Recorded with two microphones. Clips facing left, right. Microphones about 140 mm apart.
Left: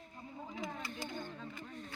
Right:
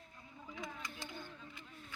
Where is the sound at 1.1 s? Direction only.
60° left (ahead or behind).